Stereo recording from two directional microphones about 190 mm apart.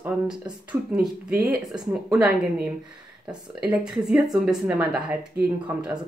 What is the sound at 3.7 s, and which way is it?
A woman's voice, 5° right (ahead or behind).